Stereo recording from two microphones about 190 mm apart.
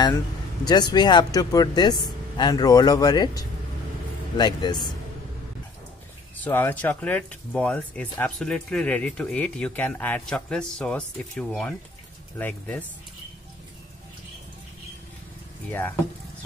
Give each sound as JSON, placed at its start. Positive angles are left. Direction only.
{"t": 0.7, "sound": "speech", "side_deg": 20}
{"t": 6.3, "sound": "speech", "side_deg": 10}